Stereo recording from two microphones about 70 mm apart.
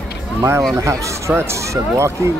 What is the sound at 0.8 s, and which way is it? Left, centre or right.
Speech, right.